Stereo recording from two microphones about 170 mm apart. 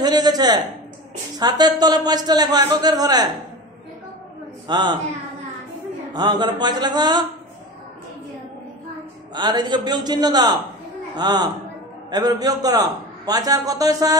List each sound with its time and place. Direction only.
0.0 s a sound: 25° right (ahead or behind)
1.4 s a man's voice: 25° right (ahead or behind)
4.6 s a man's voice: 25° right (ahead or behind)
6.1 s a man's voice: 25° right (ahead or behind)
9.3 s a man's voice: 25° right (ahead or behind)